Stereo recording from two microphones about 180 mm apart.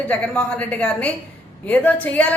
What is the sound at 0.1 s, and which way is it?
A woman's voice, 10° left (ahead or behind).